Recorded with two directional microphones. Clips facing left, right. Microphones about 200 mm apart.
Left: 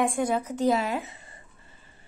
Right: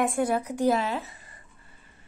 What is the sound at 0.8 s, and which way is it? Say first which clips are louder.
Speech: left 1 dB; 15° left (ahead or behind).